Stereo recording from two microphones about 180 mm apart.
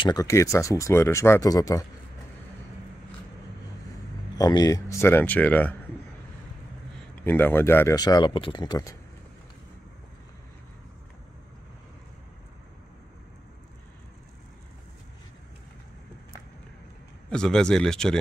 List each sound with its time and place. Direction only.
0.0 s speech: 20° left (ahead or behind)
4.4 s speech: 20° left (ahead or behind)
7.2 s speech: 10° left (ahead or behind)
17.3 s speech: 5° left (ahead or behind)